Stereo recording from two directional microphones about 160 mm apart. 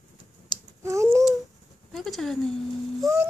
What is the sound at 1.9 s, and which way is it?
Child singing, centre (ahead or behind).